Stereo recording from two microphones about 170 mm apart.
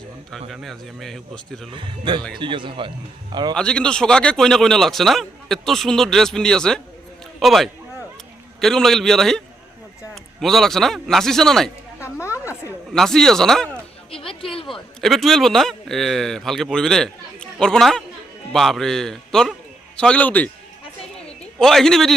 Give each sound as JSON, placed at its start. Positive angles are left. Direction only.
{"t": 0.3, "sound": "a man's voice", "side_deg": 0}
{"t": 1.7, "sound": "speech", "side_deg": -30}
{"t": 3.5, "sound": "a man's voice", "side_deg": 5}
{"t": 10.4, "sound": "a man's voice", "side_deg": 0}
{"t": 12.9, "sound": "a man's voice", "side_deg": 5}
{"t": 14.1, "sound": "music", "side_deg": 30}
{"t": 14.7, "sound": "a man's voice", "side_deg": 0}
{"t": 21.6, "sound": "a man's voice", "side_deg": 0}